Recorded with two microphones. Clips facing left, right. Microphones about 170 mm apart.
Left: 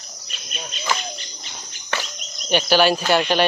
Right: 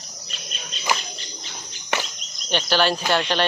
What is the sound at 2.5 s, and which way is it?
Speech, 10° left (ahead or behind).